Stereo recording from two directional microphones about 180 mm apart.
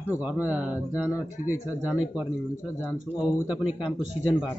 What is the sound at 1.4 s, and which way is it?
Speech, 40° left (ahead or behind).